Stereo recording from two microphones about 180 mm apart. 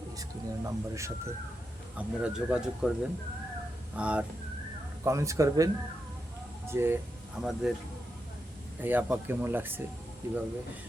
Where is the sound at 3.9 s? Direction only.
5° right (ahead or behind).